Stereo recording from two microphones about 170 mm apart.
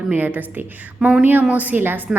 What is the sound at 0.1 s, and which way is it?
A woman's voice, 10° right (ahead or behind).